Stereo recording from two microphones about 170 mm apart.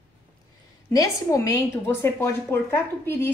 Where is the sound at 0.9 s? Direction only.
20° left (ahead or behind).